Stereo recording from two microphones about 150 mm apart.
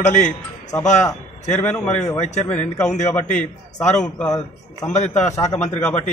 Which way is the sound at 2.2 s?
50° left (ahead or behind).